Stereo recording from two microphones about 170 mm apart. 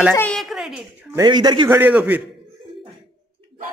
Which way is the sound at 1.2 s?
25° right (ahead or behind).